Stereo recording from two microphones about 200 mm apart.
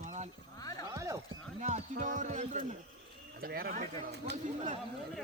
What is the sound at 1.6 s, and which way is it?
Speech, 40° right (ahead or behind).